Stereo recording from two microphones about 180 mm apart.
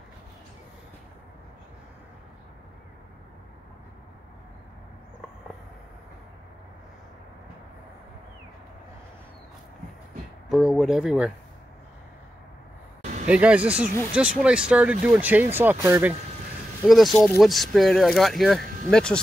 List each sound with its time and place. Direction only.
10.5 s speech: centre (ahead or behind)
13.0 s a sound: 45° right (ahead or behind)
13.3 s speech: 5° right (ahead or behind)
16.8 s speech: centre (ahead or behind)